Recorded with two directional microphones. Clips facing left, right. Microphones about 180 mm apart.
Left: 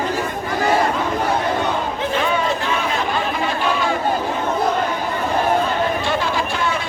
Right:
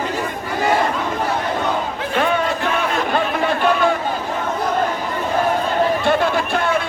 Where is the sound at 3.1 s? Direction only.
55° right (ahead or behind).